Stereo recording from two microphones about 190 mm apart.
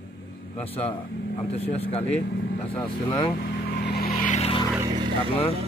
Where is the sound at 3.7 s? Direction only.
55° left (ahead or behind).